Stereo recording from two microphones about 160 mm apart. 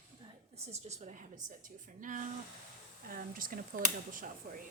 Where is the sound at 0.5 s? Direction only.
40° right (ahead or behind); by 4.3 s 55° right (ahead or behind).